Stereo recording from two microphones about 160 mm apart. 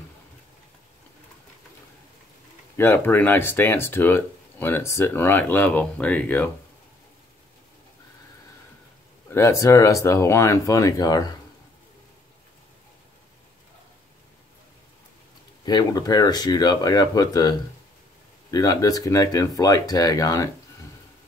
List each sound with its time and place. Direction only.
2.8 s speech: 10° left (ahead or behind)
9.3 s speech: 20° left (ahead or behind)
15.6 s speech: 25° left (ahead or behind)